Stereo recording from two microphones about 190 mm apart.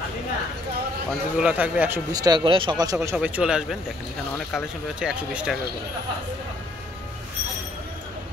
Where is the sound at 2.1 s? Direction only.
20° right (ahead or behind); by 5.6 s 5° right (ahead or behind).